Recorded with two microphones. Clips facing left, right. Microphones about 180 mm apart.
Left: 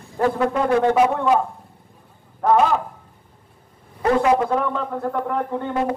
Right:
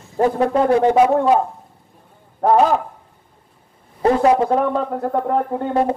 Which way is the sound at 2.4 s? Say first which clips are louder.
Right 2 dB; 40° right (ahead or behind).